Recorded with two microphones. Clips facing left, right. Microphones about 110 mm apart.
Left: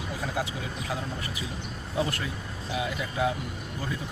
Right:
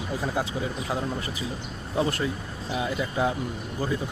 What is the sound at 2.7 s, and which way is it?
Speech, 30° right (ahead or behind).